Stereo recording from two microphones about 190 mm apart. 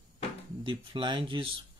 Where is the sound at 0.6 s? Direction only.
25° right (ahead or behind).